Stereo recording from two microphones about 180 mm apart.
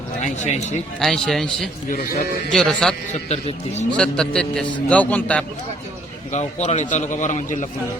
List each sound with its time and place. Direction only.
0.2 s a man's voice: 40° left (ahead or behind)
0.9 s a man's voice: 5° left (ahead or behind)
3.1 s a man's voice: 35° left (ahead or behind)
3.9 s a man's voice: 5° left (ahead or behind)
6.3 s a man's voice: 40° left (ahead or behind)